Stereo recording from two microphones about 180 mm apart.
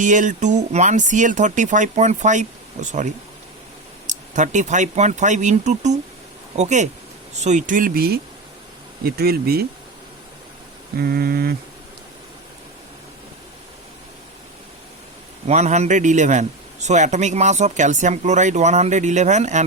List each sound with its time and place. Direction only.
0.0 s a man's voice: 45° right (ahead or behind)
11.0 s speech: 60° right (ahead or behind)
15.4 s a man's voice: 40° right (ahead or behind)